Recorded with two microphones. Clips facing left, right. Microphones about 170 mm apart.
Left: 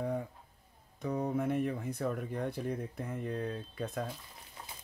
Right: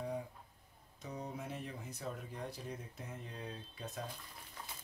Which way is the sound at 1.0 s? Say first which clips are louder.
Left 12 dB; 60° left (ahead or behind).